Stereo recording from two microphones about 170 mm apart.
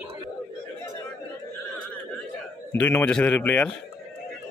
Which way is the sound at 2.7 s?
10° left (ahead or behind).